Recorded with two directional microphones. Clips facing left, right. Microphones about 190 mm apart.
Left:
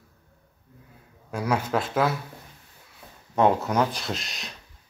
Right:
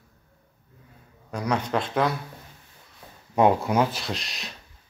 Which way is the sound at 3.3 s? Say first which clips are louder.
Right 1 dB; 10° right (ahead or behind).